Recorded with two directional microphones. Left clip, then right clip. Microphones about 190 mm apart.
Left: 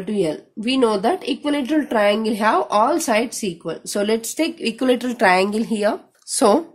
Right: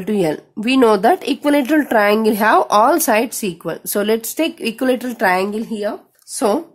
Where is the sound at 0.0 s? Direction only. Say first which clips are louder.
Right 4 dB; 30° right (ahead or behind).